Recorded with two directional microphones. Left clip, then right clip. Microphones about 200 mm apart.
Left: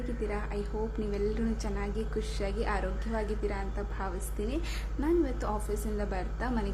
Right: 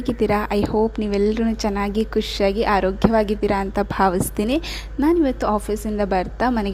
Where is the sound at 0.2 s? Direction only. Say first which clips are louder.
Right 17 dB; 45° right (ahead or behind).